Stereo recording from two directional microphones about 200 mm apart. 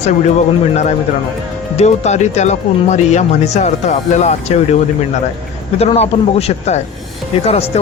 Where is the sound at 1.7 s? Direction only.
35° left (ahead or behind).